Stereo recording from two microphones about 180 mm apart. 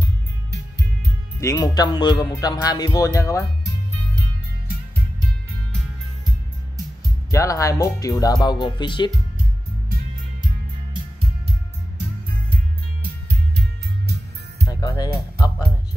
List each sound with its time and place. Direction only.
1.4 s speech: 20° left (ahead or behind)
7.2 s speech: 15° left (ahead or behind)
14.7 s music: 20° left (ahead or behind)